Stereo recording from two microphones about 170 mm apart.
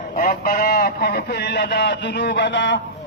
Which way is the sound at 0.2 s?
60° left (ahead or behind).